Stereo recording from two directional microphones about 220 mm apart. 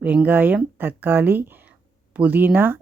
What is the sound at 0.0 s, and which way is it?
Speech, 10° right (ahead or behind).